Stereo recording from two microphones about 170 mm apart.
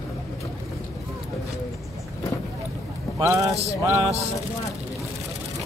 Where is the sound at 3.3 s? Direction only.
20° right (ahead or behind).